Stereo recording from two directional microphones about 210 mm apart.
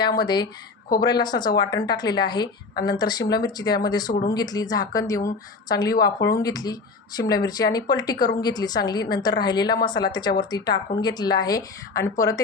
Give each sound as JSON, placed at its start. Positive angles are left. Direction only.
{"t": 0.2, "sound": "a woman's voice", "side_deg": 20}